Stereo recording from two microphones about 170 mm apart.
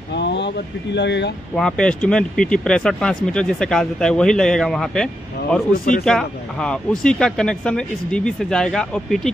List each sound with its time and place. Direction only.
0.1 s a sound: 85° left
0.9 s speech: 90° left
1.5 s speech: 5° left (ahead or behind)